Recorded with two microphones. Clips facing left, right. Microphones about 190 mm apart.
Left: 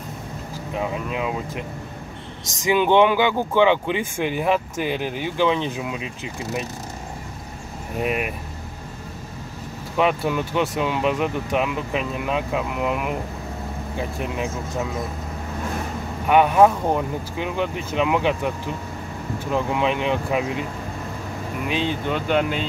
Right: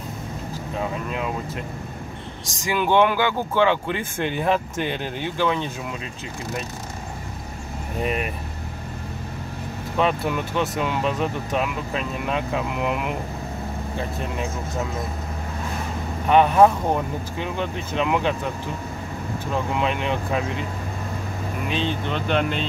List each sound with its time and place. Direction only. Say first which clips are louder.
0.7 s speech: left 2 dB; 10° left (ahead or behind)
2.6 s speech: left 3 dB; 20° left (ahead or behind)
8.0 s speech: left 1 dB; 5° left (ahead or behind)
9.9 s speech: left 2 dB; 10° left (ahead or behind)
16.3 s speech: even; 10° left (ahead or behind)
19.8 s speech: left 2 dB; 10° left (ahead or behind)
21.6 s speech: left 2 dB; 10° left (ahead or behind)